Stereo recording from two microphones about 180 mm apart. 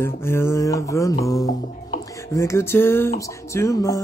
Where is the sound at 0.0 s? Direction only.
15° left (ahead or behind).